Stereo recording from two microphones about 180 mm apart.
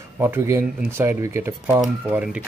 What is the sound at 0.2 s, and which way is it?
Speech, 15° right (ahead or behind).